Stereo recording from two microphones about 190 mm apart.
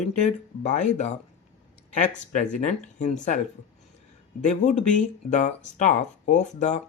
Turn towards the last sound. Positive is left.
turn(degrees=40)  # may be behind; listen again after turning